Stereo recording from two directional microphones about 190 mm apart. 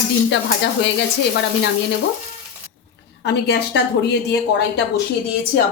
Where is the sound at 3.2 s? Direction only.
60° left (ahead or behind).